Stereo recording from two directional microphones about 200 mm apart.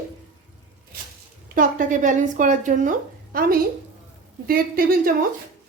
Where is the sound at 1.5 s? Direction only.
40° right (ahead or behind).